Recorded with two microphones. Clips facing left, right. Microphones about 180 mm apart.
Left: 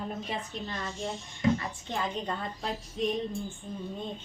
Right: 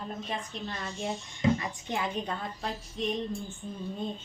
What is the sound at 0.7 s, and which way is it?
Speech, 5° right (ahead or behind).